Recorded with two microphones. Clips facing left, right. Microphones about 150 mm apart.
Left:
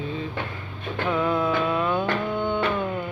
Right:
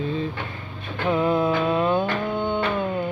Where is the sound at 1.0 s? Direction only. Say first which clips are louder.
Right 3 dB; 25° right (ahead or behind).